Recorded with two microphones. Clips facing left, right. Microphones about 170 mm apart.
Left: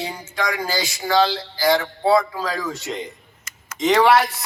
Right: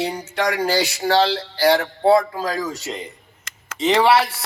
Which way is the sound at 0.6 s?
65° right (ahead or behind).